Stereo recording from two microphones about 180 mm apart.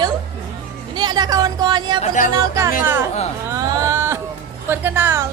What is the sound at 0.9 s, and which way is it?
Speech, 25° right (ahead or behind).